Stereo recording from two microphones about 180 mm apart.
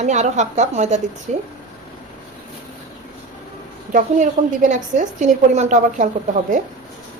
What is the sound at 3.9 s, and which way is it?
A woman's voice, 45° right (ahead or behind).